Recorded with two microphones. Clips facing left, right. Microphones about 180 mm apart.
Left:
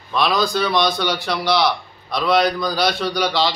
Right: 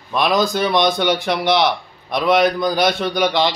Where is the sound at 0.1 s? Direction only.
15° right (ahead or behind).